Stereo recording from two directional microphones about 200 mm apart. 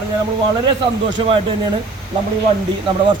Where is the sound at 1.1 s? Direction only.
25° right (ahead or behind).